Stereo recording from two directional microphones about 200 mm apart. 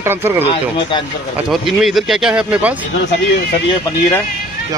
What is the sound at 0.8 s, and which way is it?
Speech, 25° left (ahead or behind).